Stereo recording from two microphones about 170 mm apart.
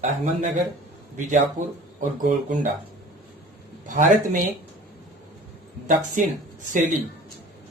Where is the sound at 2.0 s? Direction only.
50° right (ahead or behind).